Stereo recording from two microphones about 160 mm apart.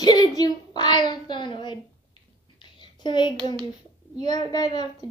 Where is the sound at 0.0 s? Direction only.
25° left (ahead or behind).